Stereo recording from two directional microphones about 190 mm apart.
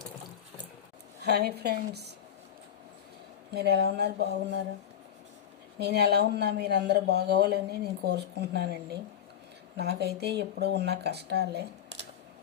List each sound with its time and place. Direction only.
1.2 s speech: 60° right (ahead or behind)
3.5 s speech: 60° right (ahead or behind)
5.8 s speech: 60° right (ahead or behind)